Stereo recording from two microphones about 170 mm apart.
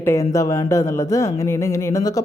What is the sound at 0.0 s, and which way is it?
A woman's voice, 15° left (ahead or behind).